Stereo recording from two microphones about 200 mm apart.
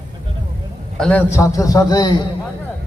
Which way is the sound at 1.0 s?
5° left (ahead or behind).